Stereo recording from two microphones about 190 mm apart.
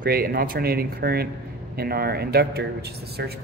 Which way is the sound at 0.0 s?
50° right (ahead or behind).